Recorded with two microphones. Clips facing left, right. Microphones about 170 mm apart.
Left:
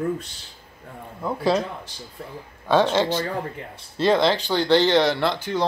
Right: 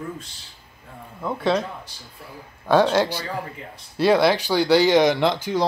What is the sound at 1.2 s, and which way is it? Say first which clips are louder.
Speech: even; centre (ahead or behind).